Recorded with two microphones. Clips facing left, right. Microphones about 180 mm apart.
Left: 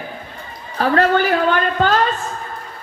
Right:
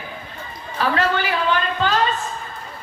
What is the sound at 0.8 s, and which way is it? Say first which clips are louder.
A woman's voice: left 5 dB; 45° left (ahead or behind).